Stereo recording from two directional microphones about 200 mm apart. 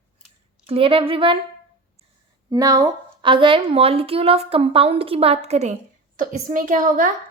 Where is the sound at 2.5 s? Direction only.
20° right (ahead or behind).